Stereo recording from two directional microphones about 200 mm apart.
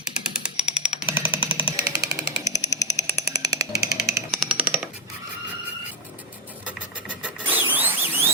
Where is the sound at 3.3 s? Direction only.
15° right (ahead or behind).